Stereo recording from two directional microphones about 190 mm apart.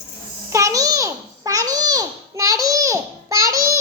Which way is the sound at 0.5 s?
15° right (ahead or behind).